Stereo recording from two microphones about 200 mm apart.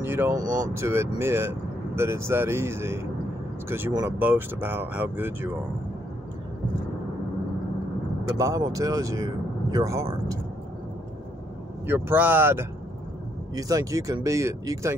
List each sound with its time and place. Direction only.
0.0 s speech: 10° right (ahead or behind)
8.4 s speech: 15° right (ahead or behind)
11.8 s speech: 10° right (ahead or behind)